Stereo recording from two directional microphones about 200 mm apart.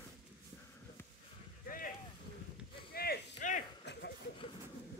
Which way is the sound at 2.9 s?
50° left (ahead or behind).